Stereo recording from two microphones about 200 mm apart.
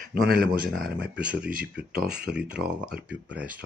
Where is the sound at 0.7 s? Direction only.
50° right (ahead or behind).